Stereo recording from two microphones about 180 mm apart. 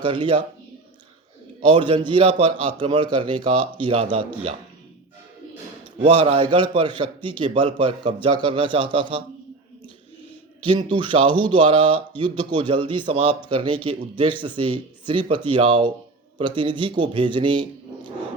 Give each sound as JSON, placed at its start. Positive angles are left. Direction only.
{"t": 0.0, "sound": "speech", "side_deg": -25}
{"t": 1.7, "sound": "speech", "side_deg": -25}
{"t": 6.0, "sound": "speech", "side_deg": -30}
{"t": 10.7, "sound": "speech", "side_deg": -25}